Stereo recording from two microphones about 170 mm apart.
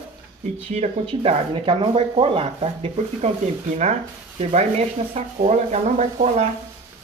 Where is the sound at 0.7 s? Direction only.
40° right (ahead or behind).